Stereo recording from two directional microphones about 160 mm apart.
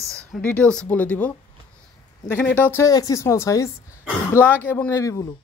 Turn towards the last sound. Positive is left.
turn(degrees=20)  # may be behind; listen again after turning